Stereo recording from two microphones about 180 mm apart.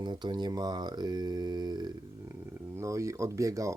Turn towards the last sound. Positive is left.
turn(degrees=-15)  # may be behind; listen again after turning